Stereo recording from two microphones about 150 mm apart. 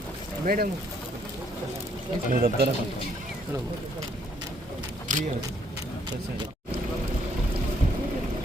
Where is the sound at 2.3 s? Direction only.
80° right.